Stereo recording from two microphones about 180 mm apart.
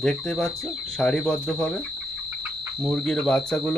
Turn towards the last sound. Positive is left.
turn(degrees=5)  # may be behind; listen again after turning